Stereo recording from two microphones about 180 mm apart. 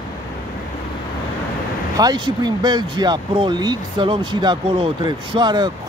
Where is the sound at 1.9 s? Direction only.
20° right (ahead or behind).